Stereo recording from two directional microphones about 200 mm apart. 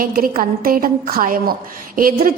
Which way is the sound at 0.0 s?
45° right (ahead or behind).